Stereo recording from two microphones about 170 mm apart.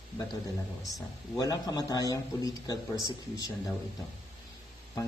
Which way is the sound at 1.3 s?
20° left (ahead or behind).